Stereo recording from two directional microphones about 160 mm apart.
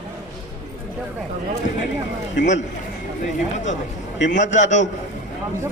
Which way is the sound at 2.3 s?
50° left (ahead or behind).